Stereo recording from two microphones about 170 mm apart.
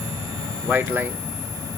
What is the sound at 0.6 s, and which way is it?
Speech, 10° right (ahead or behind).